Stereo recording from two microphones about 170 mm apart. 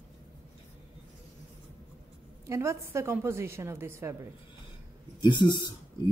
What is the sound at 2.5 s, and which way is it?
A woman's voice, 15° right (ahead or behind).